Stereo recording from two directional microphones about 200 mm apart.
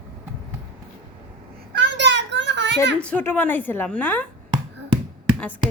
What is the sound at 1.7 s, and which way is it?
Children playing, 65° right (ahead or behind).